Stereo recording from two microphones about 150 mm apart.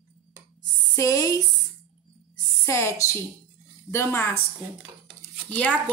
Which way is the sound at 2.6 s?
20° left (ahead or behind).